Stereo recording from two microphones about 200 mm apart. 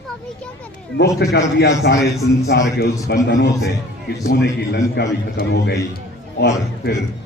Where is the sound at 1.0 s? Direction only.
55° left (ahead or behind).